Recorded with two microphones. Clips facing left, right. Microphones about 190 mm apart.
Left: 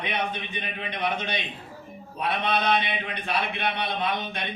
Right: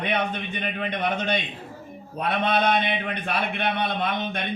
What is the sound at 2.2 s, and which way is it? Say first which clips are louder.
A man's voice: right 3 dB; 50° right (ahead or behind).